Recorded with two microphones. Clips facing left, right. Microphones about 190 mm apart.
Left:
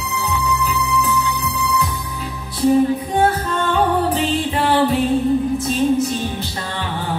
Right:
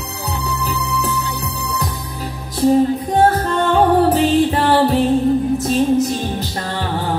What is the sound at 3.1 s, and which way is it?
Music, 40° right (ahead or behind).